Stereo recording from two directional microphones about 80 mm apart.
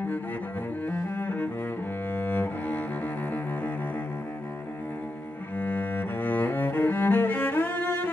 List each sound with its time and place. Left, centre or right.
0.8 s cello: left
5.6 s cello: left